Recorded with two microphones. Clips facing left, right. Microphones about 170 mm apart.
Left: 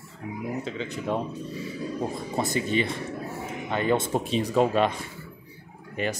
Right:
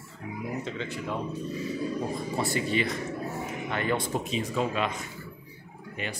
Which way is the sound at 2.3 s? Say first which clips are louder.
Left 3 dB; 20° left (ahead or behind).